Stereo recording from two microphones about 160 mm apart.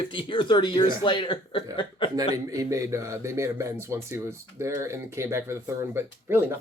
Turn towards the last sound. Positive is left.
turn(degrees=-15)  # may be behind; listen again after turning